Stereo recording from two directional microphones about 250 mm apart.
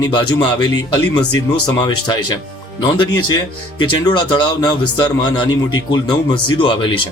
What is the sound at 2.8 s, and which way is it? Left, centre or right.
Speech, centre.